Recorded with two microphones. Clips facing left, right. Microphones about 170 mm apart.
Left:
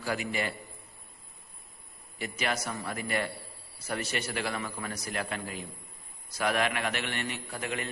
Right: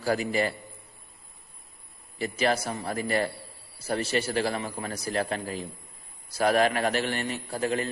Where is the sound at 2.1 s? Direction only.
35° right (ahead or behind).